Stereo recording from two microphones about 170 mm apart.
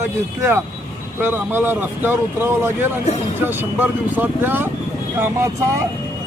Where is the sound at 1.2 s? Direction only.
10° right (ahead or behind).